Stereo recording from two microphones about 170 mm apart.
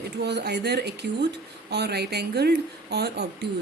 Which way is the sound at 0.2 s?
80° right.